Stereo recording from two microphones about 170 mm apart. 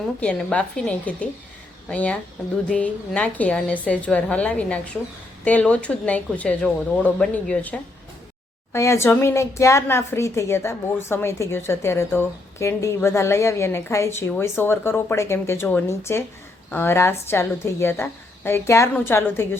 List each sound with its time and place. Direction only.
0.2 s a woman's voice: 5° left (ahead or behind)